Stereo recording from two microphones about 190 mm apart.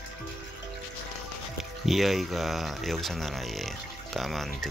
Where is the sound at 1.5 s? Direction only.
Centre (ahead or behind).